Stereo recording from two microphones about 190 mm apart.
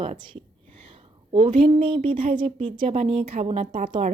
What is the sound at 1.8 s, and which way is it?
Speech, 25° right (ahead or behind).